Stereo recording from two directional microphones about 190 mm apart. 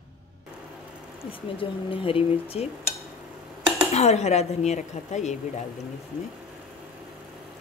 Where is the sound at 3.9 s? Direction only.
35° left (ahead or behind).